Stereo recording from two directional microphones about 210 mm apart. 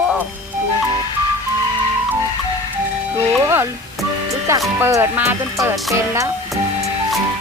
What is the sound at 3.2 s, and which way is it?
Speech, 10° right (ahead or behind).